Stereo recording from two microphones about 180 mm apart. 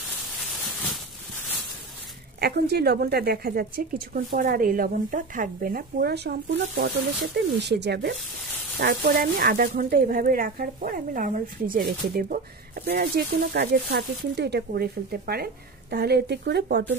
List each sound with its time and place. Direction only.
2.4 s speech: 65° right (ahead or behind)
8.7 s speech: 55° right (ahead or behind)